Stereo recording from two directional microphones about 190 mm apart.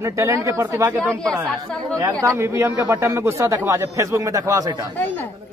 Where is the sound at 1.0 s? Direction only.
5° left (ahead or behind).